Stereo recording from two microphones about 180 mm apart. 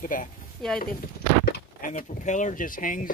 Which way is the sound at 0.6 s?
5° left (ahead or behind).